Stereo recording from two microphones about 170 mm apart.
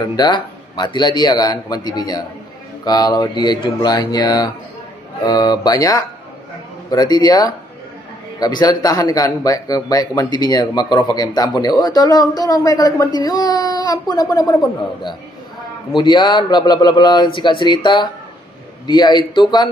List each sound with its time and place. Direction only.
0.0 s speech: 25° left (ahead or behind)